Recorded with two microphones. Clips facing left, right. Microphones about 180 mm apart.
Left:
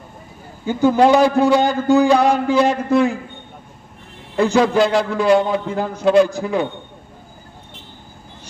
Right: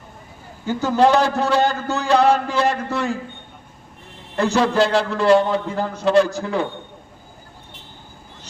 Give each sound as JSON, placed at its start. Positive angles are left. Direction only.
{"t": 0.6, "sound": "a man's voice", "side_deg": 15}
{"t": 4.5, "sound": "a man's voice", "side_deg": 15}